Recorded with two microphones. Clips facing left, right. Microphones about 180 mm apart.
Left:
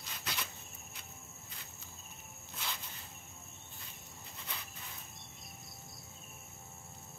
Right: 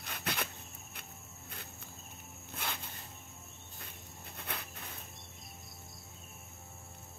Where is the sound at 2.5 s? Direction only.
55° right (ahead or behind).